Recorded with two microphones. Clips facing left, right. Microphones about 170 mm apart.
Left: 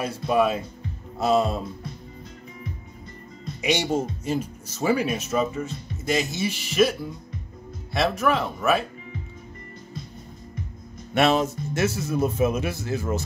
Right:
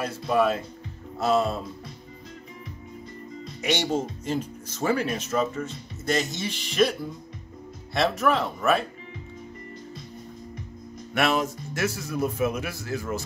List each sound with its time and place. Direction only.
0.0 s speech: 15° left (ahead or behind)
3.6 s speech: 10° left (ahead or behind)
11.1 s speech: 25° left (ahead or behind)